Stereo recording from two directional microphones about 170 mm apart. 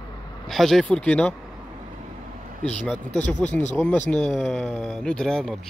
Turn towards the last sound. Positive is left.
turn(degrees=5)  # may be behind; listen again after turning